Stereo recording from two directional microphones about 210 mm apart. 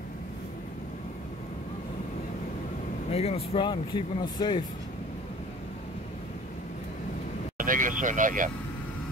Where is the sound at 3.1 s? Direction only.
30° left (ahead or behind).